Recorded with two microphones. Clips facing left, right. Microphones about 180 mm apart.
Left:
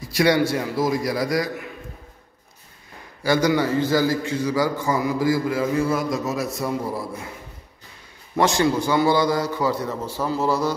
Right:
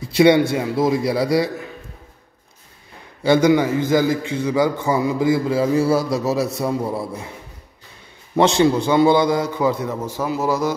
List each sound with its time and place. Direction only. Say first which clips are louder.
0.0 s a man's voice: right 5 dB; 25° right (ahead or behind)
3.3 s a man's voice: right 5 dB; 20° right (ahead or behind)
8.4 s a man's voice: right 4 dB; 25° right (ahead or behind)